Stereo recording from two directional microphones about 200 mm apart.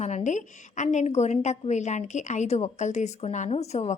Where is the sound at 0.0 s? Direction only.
35° left (ahead or behind).